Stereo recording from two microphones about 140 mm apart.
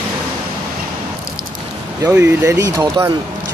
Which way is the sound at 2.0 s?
20° right (ahead or behind).